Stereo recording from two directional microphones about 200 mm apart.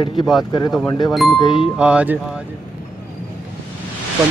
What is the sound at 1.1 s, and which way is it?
Speech, centre (ahead or behind).